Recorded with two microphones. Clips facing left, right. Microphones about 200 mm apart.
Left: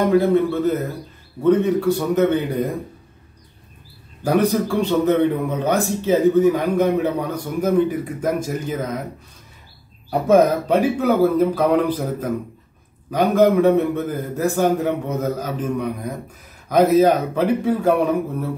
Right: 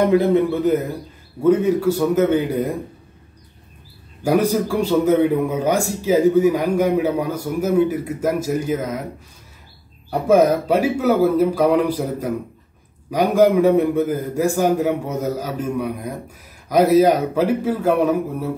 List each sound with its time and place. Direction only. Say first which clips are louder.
0.0 s a man's voice: right 1 dB; 20° right (ahead or behind)
4.2 s a man's voice: even; 10° right (ahead or behind)
10.2 s a man's voice: even; 10° right (ahead or behind)